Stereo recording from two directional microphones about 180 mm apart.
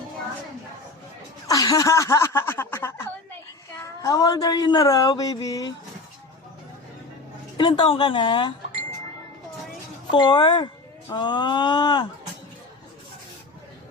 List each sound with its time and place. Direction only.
1.5 s speech: 20° left (ahead or behind)
7.5 s speech: 25° left (ahead or behind)
10.1 s speech: 25° left (ahead or behind)